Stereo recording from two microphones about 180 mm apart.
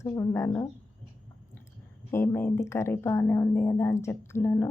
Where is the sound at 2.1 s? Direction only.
15° left (ahead or behind).